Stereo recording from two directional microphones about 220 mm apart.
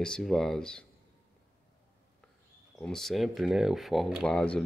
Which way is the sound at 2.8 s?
Centre (ahead or behind).